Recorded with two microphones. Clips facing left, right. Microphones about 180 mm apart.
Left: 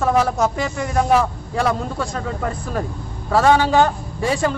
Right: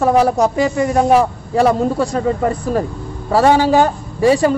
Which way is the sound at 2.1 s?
5° right (ahead or behind).